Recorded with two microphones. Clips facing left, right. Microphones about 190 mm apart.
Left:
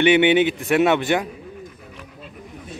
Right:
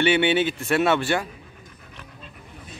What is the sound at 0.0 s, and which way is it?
Speech, 15° left (ahead or behind).